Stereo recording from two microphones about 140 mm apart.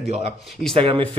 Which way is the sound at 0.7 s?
40° right (ahead or behind).